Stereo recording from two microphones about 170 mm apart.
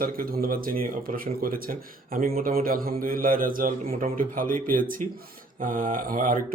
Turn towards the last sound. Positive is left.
turn(degrees=-55)  # may be behind; listen again after turning